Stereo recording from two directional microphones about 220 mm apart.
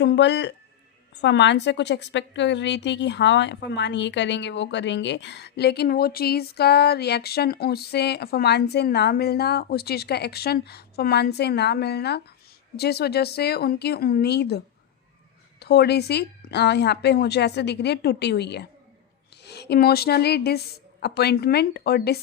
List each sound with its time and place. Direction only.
0.0 s a woman's voice: 50° left (ahead or behind)
15.6 s a woman's voice: 50° left (ahead or behind)